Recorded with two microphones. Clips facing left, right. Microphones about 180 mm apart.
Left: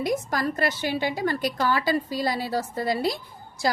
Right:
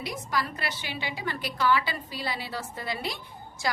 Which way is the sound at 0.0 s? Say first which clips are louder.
Left 6 dB; 45° left (ahead or behind).